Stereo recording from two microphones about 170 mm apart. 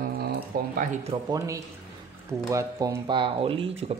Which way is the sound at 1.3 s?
20° right (ahead or behind).